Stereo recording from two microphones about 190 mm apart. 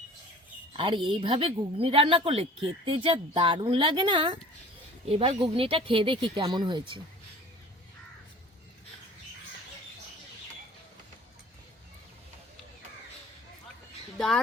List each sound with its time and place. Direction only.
0.7 s speech: 25° right (ahead or behind)
14.2 s speech: centre (ahead or behind)